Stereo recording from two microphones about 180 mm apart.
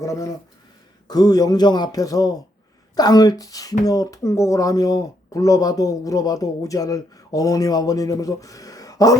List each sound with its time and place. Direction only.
0.0 s speech: 20° left (ahead or behind)